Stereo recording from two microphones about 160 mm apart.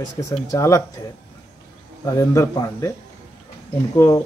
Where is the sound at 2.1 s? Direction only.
20° left (ahead or behind).